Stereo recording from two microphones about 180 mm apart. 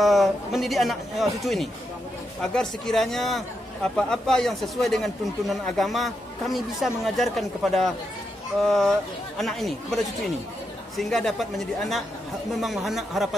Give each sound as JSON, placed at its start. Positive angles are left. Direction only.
{"t": 0.0, "sound": "a man's voice", "side_deg": 0}